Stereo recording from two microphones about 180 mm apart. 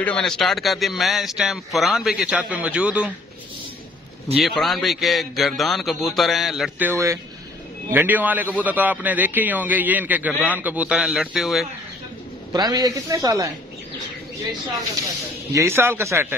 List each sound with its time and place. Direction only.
0.0 s a man's voice: 5° left (ahead or behind)
4.4 s a man's voice: centre (ahead or behind)
12.5 s speech: 20° right (ahead or behind)
15.5 s a man's voice: 15° right (ahead or behind)